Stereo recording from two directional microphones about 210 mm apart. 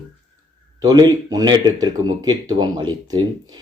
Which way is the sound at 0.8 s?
20° right (ahead or behind).